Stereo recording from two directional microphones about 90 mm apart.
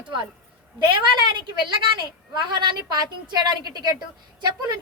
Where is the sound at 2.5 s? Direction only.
60° right (ahead or behind).